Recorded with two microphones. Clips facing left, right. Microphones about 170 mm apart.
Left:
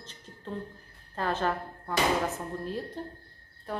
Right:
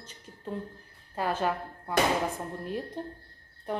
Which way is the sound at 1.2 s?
10° right (ahead or behind).